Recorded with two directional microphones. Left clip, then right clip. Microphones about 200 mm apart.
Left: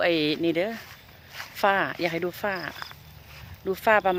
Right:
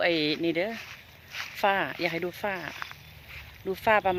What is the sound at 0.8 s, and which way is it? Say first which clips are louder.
Zipper: right 2 dB; 20° left (ahead or behind).